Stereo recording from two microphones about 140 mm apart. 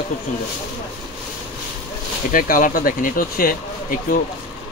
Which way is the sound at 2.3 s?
80° left.